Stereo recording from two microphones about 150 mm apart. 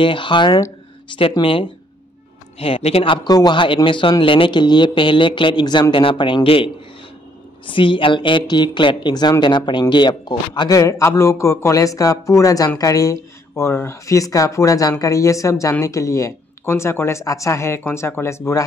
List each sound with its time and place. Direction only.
0.0 s speech: 35° left (ahead or behind); by 18.6 s 20° left (ahead or behind)